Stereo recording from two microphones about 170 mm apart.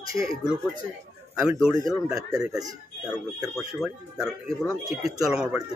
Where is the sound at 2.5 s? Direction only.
20° right (ahead or behind).